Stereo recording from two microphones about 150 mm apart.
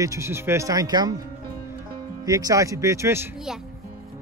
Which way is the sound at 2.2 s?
25° right (ahead or behind).